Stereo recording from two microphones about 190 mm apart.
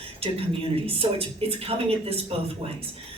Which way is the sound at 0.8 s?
30° right (ahead or behind).